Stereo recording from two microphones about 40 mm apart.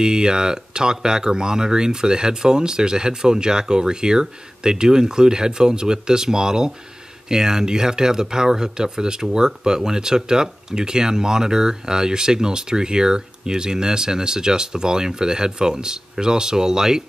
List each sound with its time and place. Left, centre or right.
0.0 s speech: centre